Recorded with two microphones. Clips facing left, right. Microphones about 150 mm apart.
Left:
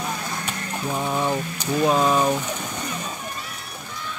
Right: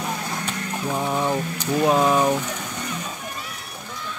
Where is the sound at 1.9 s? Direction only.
15° right (ahead or behind).